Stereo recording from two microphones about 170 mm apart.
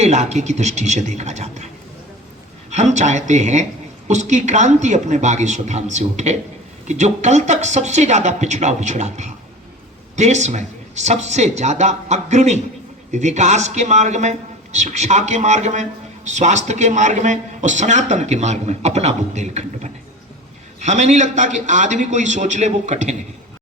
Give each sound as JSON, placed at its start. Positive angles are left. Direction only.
{"t": 0.0, "sound": "a man's voice", "side_deg": -40}